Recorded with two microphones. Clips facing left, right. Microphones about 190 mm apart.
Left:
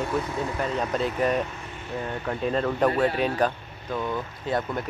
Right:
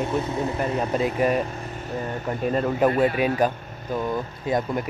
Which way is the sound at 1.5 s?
40° right (ahead or behind).